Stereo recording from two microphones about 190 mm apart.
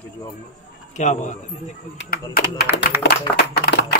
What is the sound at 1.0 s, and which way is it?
Speech, 40° left (ahead or behind).